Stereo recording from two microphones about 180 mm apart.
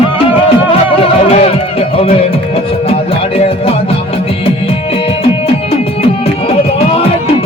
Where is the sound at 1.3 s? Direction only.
35° left (ahead or behind).